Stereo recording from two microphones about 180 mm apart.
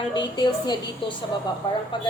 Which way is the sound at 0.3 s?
25° left (ahead or behind).